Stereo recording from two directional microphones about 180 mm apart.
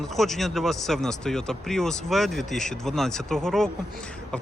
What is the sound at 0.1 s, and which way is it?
Speech, centre (ahead or behind).